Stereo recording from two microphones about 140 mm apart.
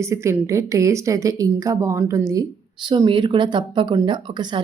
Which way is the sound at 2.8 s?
35° right (ahead or behind).